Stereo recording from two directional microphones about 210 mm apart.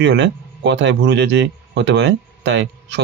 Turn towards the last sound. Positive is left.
turn(degrees=-55)  # may be behind; listen again after turning